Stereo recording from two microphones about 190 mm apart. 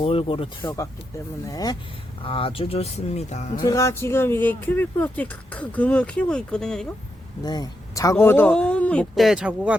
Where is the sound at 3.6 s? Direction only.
15° left (ahead or behind).